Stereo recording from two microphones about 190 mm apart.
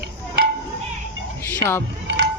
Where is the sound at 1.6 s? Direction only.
15° left (ahead or behind).